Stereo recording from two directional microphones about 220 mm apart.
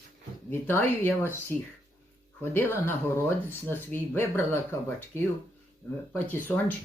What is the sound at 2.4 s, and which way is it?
Speech, 10° left (ahead or behind).